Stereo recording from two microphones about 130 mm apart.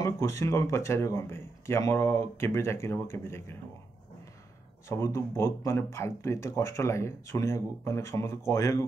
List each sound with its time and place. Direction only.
0.0 s speech: 20° left (ahead or behind)
4.8 s speech: 20° left (ahead or behind)